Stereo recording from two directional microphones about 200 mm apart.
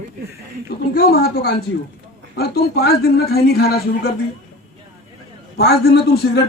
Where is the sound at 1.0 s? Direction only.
50° left (ahead or behind).